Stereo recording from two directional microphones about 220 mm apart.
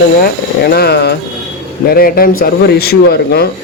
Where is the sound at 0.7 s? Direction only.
45° left (ahead or behind).